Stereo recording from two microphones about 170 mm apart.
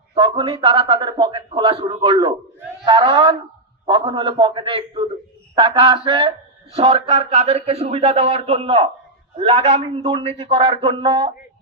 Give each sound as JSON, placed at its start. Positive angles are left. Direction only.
{"t": 0.1, "sound": "a man's voice", "side_deg": -30}